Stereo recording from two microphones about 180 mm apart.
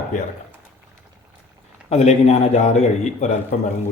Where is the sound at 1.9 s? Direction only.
35° left (ahead or behind).